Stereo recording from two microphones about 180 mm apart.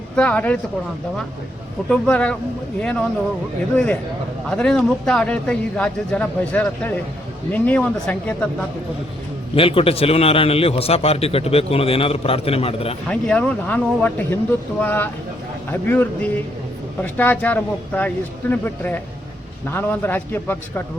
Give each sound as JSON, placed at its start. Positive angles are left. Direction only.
{"t": 0.2, "sound": "a man's voice", "side_deg": 10}
{"t": 1.9, "sound": "a man's voice", "side_deg": 5}
{"t": 4.4, "sound": "a man's voice", "side_deg": 5}
{"t": 9.6, "sound": "a man's voice", "side_deg": 30}
{"t": 13.1, "sound": "a man's voice", "side_deg": 5}